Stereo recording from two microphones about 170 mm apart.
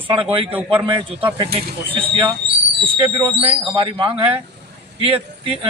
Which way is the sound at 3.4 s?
30° right (ahead or behind).